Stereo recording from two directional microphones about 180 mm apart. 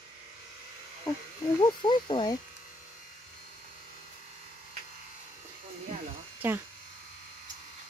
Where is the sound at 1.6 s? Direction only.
25° left (ahead or behind).